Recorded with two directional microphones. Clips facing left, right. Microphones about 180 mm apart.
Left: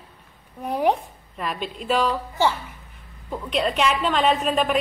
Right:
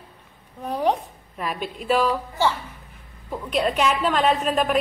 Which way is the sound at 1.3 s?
5° right (ahead or behind).